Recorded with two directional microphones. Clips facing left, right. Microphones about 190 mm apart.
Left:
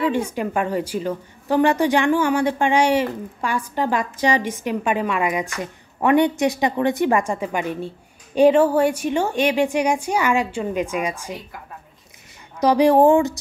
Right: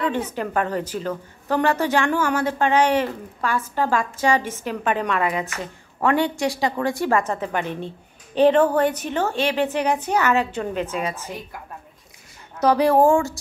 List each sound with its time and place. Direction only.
0.0 s a woman's voice: 10° left (ahead or behind)
12.5 s a woman's voice: 15° left (ahead or behind)